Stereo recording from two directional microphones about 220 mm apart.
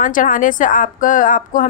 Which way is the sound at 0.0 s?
35° left (ahead or behind).